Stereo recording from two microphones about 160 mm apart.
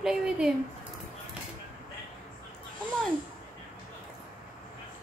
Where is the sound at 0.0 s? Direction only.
5° right (ahead or behind).